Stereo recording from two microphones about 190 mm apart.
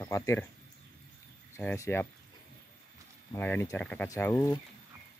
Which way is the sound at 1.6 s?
10° left (ahead or behind).